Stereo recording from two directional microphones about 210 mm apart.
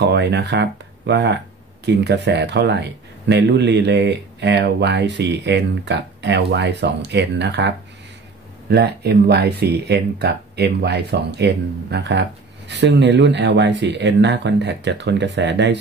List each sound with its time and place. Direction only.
0.0 s speech: 55° right (ahead or behind)